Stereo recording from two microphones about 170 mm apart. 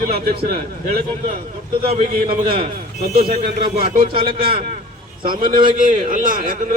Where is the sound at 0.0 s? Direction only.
60° right (ahead or behind).